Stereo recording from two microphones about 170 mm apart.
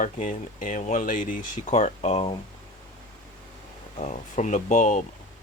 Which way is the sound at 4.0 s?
45° left (ahead or behind).